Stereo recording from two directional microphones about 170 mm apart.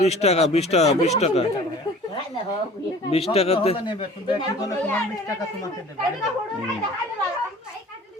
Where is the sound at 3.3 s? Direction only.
35° left (ahead or behind); by 5.7 s 15° left (ahead or behind).